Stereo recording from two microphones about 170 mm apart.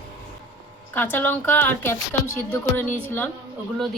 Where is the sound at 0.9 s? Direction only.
10° left (ahead or behind).